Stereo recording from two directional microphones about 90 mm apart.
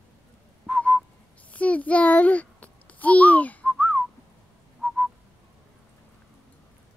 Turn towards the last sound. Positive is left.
turn(degrees=0)  # may be behind; listen again after turning